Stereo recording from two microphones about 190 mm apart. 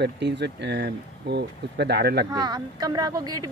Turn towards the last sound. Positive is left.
turn(degrees=-20)  # may be behind; listen again after turning